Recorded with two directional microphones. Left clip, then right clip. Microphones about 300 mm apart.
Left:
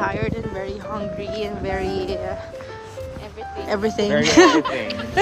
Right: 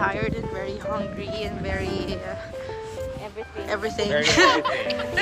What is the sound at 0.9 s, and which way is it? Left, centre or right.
Speech, centre.